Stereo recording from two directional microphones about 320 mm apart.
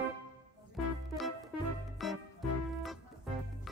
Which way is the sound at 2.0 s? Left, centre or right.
Centre.